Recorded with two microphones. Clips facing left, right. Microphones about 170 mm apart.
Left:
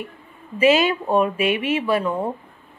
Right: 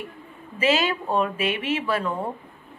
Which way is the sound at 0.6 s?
15° left (ahead or behind).